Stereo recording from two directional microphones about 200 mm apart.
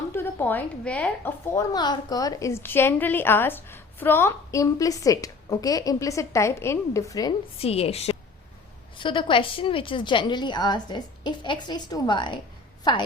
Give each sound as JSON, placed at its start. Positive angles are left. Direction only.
{"t": 0.1, "sound": "a woman's voice", "side_deg": 10}
{"t": 1.7, "sound": "a woman's voice", "side_deg": 20}